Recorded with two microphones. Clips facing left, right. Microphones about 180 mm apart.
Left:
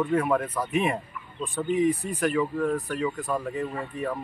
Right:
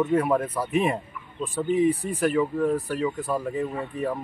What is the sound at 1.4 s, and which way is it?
Speech, 30° right (ahead or behind).